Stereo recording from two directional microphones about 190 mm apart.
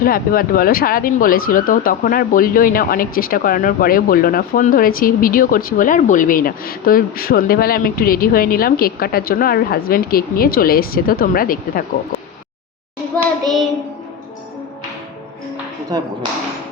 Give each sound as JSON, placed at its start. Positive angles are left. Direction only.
{"t": 0.0, "sound": "speech", "side_deg": 50}